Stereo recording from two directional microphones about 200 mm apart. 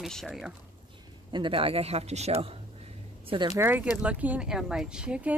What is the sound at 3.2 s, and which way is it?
Speech, 20° right (ahead or behind).